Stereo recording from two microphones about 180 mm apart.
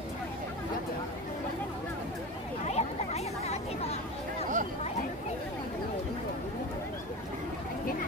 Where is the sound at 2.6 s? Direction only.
35° left (ahead or behind).